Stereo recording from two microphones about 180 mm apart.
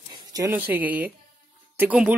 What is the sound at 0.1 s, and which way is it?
Speech, 20° right (ahead or behind).